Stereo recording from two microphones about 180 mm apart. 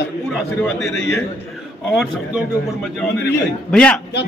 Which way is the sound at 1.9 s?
Centre (ahead or behind).